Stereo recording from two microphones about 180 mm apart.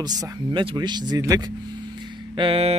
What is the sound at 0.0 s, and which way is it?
A man's voice, 20° right (ahead or behind).